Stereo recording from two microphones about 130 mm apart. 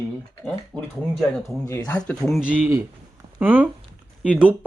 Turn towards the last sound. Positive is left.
turn(degrees=-10)  # may be behind; listen again after turning